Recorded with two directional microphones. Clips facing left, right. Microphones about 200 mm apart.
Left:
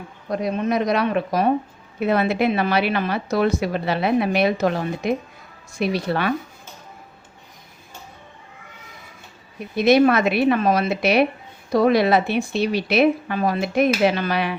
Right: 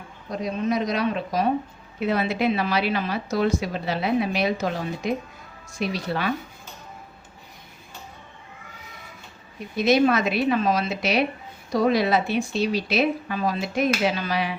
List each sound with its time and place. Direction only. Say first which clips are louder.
0.3 s a woman's voice: left 3 dB; 60° left (ahead or behind)
9.7 s a woman's voice: left 4 dB; 60° left (ahead or behind)